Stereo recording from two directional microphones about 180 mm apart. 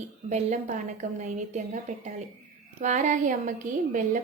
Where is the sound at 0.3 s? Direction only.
40° right (ahead or behind).